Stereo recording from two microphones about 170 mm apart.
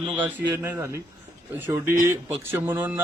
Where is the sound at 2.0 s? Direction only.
15° right (ahead or behind).